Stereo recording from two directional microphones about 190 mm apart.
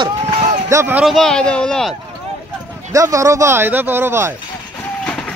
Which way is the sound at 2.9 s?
15° right (ahead or behind).